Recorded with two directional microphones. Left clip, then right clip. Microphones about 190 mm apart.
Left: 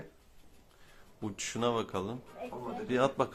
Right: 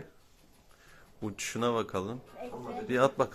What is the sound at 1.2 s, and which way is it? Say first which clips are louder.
Speech: right 1 dB; 10° right (ahead or behind).